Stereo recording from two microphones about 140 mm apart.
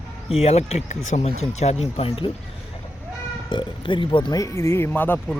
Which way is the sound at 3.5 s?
35° left (ahead or behind).